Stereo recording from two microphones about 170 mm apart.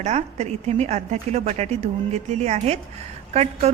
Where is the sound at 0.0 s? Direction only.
40° right (ahead or behind).